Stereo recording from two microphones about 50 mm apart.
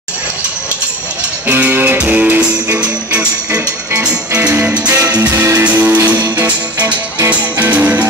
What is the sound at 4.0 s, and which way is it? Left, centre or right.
Music, right.